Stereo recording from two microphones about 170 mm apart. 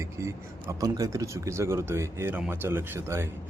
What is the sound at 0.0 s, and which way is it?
Speech, 15° right (ahead or behind).